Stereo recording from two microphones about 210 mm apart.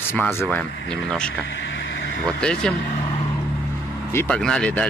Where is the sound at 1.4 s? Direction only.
60° left (ahead or behind).